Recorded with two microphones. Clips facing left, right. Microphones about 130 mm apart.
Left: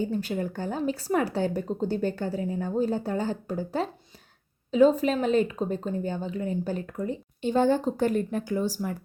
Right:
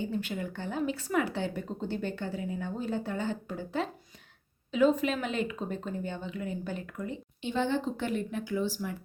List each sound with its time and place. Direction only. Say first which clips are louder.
0.0 s speech: left 5 dB; 40° left (ahead or behind)